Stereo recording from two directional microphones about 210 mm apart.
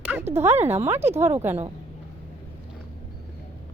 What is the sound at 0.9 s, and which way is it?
Speech, 10° right (ahead or behind).